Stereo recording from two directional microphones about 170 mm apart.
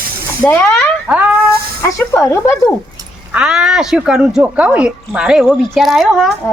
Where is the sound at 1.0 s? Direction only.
5° right (ahead or behind).